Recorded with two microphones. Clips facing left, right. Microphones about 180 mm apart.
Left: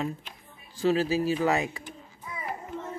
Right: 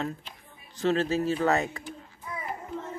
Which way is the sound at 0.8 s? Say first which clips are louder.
Left 1 dB; 10° left (ahead or behind).